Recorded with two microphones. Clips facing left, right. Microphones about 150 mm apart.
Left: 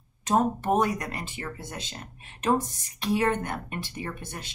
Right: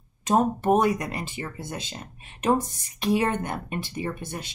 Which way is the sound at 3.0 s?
15° right (ahead or behind).